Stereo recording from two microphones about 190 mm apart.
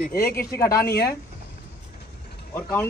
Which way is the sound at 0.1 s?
50° left (ahead or behind).